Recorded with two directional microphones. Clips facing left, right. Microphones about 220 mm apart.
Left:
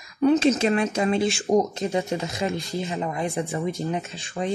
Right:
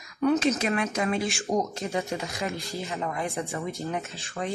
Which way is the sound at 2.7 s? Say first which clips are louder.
Left 4 dB; 15° left (ahead or behind).